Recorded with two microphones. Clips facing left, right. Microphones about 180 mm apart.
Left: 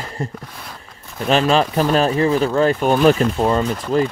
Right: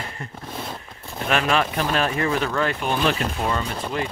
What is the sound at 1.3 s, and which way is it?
Speech, 30° left (ahead or behind).